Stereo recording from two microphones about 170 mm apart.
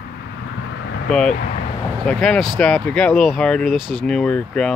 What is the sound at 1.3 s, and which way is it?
Speech, 55° left (ahead or behind).